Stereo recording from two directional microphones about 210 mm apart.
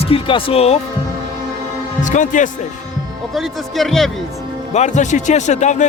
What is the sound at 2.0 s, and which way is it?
Speech, 35° left (ahead or behind).